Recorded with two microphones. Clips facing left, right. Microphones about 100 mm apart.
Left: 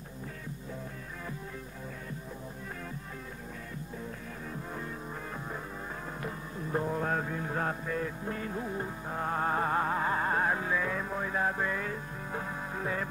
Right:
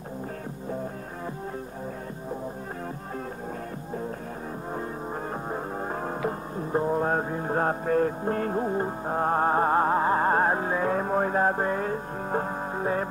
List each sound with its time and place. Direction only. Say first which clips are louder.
6.5 s music: right 5 dB; 35° right (ahead or behind)